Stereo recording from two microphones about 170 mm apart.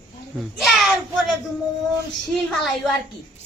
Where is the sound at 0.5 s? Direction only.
Centre (ahead or behind).